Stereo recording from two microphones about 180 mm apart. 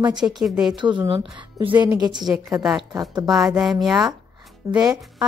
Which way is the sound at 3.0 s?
20° right (ahead or behind).